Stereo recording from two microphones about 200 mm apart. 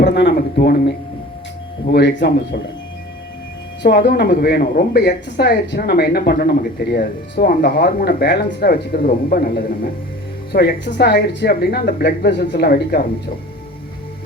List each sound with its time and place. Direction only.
0.0 s speech: 60° left (ahead or behind)
3.8 s speech: 55° left (ahead or behind)